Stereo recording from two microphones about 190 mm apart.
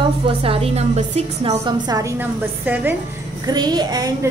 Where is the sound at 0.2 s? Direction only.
30° right (ahead or behind).